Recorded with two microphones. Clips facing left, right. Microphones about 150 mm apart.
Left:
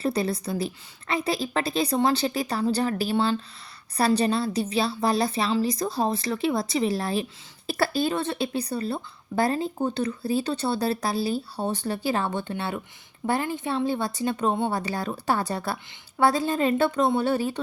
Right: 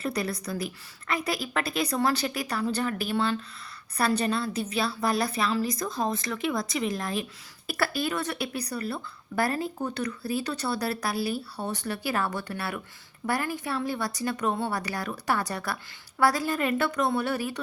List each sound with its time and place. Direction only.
0.0 s a woman's voice: 30° left (ahead or behind)